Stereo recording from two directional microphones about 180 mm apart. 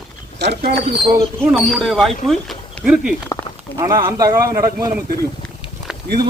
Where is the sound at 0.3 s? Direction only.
65° right (ahead or behind).